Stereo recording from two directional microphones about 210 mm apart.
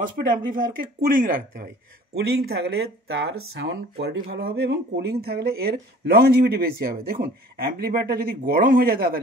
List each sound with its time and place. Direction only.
0.3 s a woman's voice: 40° right (ahead or behind)
3.3 s speech: 60° right (ahead or behind); by 9.2 s 45° right (ahead or behind)